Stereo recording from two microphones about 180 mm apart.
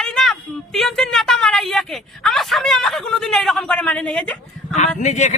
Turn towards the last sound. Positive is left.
turn(degrees=40)  # may be behind; listen again after turning